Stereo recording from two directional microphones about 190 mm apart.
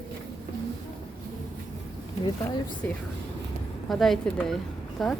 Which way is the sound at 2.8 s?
10° left (ahead or behind).